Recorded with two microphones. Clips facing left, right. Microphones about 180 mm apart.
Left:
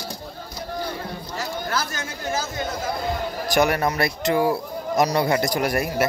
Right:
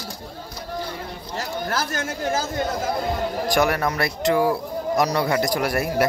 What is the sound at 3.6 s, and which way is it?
A man's voice, 20° left (ahead or behind).